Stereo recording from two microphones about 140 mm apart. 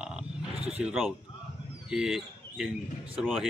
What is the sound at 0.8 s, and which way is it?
Speech, centre (ahead or behind).